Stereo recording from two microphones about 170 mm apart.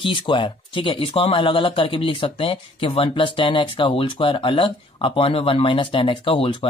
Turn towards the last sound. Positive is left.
turn(degrees=30)  # may be behind; listen again after turning